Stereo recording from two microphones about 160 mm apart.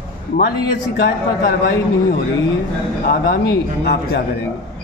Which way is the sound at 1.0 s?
90° left.